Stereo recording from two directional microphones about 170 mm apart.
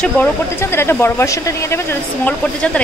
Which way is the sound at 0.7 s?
15° left (ahead or behind).